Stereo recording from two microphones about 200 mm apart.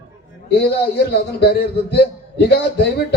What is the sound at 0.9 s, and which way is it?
A man's voice, 55° left (ahead or behind).